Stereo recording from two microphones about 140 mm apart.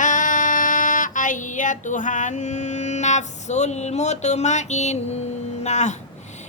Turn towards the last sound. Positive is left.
turn(degrees=55)  # may be behind; listen again after turning